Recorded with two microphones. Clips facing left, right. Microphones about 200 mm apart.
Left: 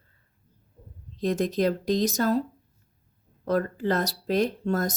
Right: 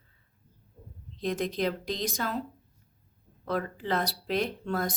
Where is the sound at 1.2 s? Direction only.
45° left (ahead or behind).